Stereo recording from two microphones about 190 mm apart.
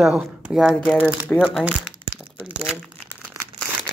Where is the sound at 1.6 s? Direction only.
5° right (ahead or behind).